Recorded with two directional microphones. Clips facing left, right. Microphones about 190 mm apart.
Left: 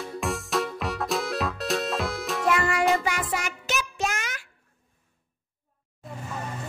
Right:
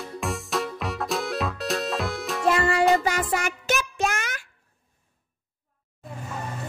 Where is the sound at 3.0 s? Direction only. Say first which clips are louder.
Right 3 dB; 45° right (ahead or behind).